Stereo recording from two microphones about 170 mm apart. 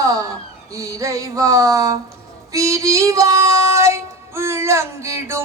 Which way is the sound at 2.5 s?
20° right (ahead or behind).